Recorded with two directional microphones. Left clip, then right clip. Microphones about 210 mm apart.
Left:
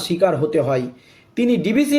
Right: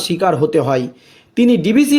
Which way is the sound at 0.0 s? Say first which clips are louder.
Right 3 dB; 40° right (ahead or behind).